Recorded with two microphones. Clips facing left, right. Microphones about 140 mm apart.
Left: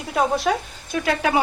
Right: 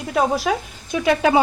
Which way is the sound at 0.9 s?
25° right (ahead or behind).